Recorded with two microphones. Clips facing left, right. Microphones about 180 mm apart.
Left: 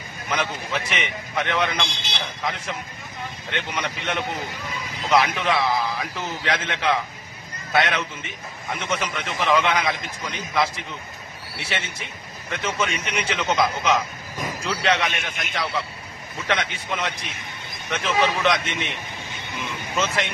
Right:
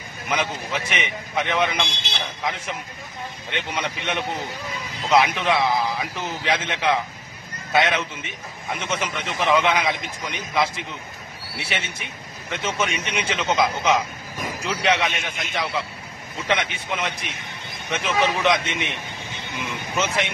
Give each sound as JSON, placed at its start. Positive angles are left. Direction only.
{"t": 0.3, "sound": "a man's voice", "side_deg": -15}
{"t": 20.0, "sound": "a man's voice", "side_deg": -20}